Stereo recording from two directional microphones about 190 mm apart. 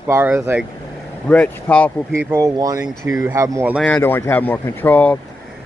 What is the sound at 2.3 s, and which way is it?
Speech, 15° right (ahead or behind).